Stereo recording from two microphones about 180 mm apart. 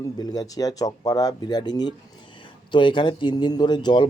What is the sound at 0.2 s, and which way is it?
A man's voice, 20° left (ahead or behind).